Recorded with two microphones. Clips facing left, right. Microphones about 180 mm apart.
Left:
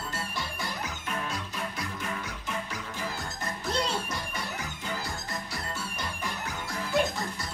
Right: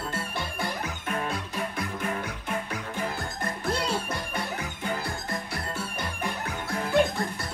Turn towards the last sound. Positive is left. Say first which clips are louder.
# right 4 dB
turn(degrees=-55)  # may be behind; listen again after turning